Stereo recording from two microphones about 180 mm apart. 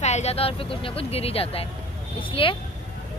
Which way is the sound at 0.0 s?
40° left (ahead or behind).